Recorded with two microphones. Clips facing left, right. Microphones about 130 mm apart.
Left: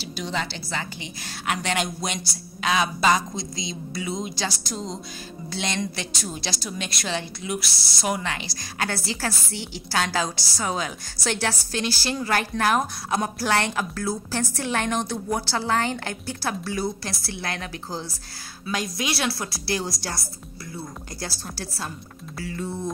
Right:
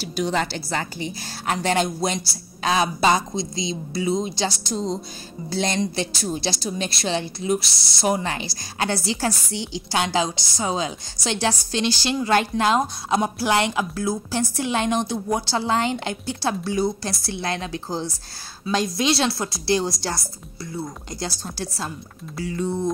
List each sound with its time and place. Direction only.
0.0 s a woman's voice: 45° right (ahead or behind); by 4.7 s 25° right (ahead or behind)
5.5 s a woman's voice: 40° right (ahead or behind)
5.8 s a woman's voice: 25° right (ahead or behind)